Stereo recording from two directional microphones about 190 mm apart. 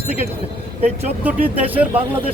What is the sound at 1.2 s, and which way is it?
Speech, 10° right (ahead or behind).